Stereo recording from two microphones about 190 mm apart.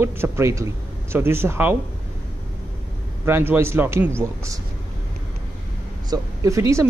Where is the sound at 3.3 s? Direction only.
10° right (ahead or behind).